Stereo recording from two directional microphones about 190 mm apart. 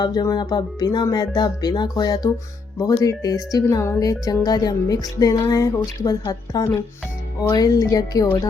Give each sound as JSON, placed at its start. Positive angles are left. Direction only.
{"t": 0.0, "sound": "speech", "side_deg": 20}